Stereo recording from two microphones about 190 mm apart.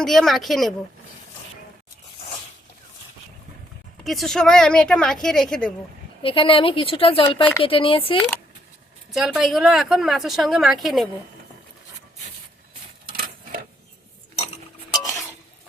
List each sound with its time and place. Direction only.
0.0 s speech: centre (ahead or behind)
4.0 s speech: centre (ahead or behind)
6.2 s speech: 30° left (ahead or behind)
9.1 s speech: centre (ahead or behind)
13.1 s a sound: 50° right (ahead or behind)
15.0 s stir: 15° left (ahead or behind)